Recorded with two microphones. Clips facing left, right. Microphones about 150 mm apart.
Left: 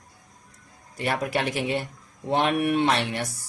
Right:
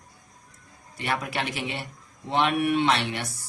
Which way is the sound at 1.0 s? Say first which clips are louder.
Left 3 dB; 45° left (ahead or behind).